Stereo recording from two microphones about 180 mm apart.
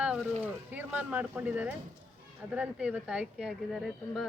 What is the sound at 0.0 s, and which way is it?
Speech, 5° right (ahead or behind).